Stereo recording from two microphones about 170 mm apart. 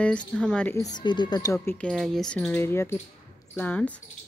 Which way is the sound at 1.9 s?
Centre (ahead or behind).